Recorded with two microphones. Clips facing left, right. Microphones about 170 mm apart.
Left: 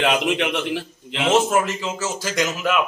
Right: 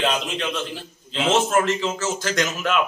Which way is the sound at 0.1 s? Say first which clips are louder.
Left 5 dB; 80° left.